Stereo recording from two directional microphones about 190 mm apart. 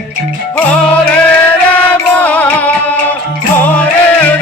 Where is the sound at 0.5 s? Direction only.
5° left (ahead or behind).